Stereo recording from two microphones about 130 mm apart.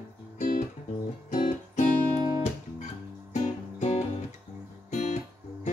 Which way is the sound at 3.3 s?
65° left (ahead or behind).